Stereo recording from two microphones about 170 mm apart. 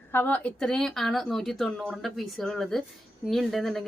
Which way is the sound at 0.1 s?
10° left (ahead or behind).